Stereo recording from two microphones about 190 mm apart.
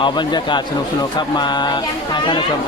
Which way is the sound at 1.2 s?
25° left (ahead or behind).